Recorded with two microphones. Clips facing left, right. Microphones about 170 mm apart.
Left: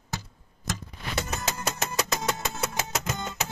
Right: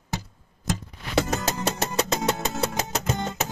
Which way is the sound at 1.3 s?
35° right (ahead or behind).